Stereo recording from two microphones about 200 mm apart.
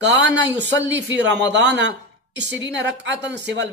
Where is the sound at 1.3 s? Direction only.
60° right (ahead or behind).